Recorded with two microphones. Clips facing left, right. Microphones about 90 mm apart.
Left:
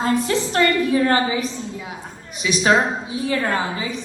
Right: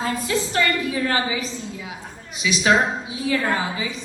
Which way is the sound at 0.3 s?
45° left (ahead or behind).